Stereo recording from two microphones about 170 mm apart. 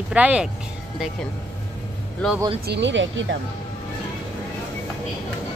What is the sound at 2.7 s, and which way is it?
Speech, 90° right.